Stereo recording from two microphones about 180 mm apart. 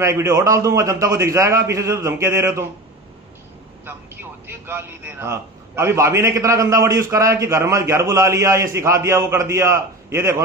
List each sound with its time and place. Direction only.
0.0 s a man's voice: 15° right (ahead or behind)
3.8 s a man's voice: 10° right (ahead or behind)